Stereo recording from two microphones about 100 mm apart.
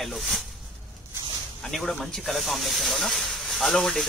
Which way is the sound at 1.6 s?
Centre (ahead or behind).